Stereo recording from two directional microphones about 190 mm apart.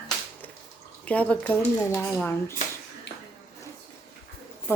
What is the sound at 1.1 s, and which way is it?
A woman's voice, 5° left (ahead or behind).